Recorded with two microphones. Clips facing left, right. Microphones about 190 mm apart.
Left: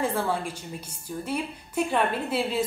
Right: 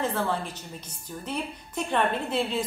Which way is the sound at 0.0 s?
10° left (ahead or behind).